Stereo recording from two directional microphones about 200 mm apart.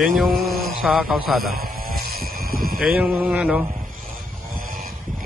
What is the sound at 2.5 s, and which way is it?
Vehicle, 45° right (ahead or behind).